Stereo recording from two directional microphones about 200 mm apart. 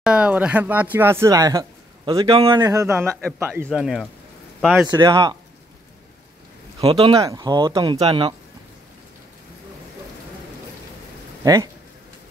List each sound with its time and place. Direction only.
0.0 s speech: 5° right (ahead or behind)
4.8 s speech: 15° right (ahead or behind)
6.8 s speech: 30° right (ahead or behind)
11.4 s speech: 20° right (ahead or behind)